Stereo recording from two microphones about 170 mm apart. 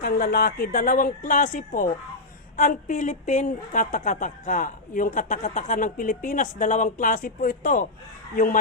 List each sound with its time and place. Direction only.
0.0 s a woman's voice: 60° left (ahead or behind)